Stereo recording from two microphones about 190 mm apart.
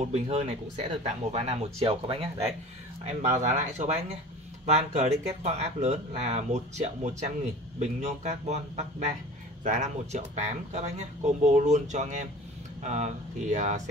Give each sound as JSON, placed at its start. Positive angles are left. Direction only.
{"t": 0.0, "sound": "speech", "side_deg": -35}